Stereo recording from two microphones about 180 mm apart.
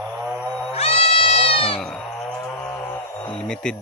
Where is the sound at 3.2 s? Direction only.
5° left (ahead or behind).